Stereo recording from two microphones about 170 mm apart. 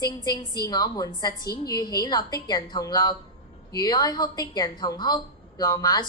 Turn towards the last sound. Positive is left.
turn(degrees=25)  # may be behind; listen again after turning